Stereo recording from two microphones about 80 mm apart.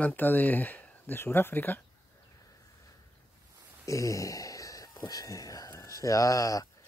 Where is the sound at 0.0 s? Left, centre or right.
Left.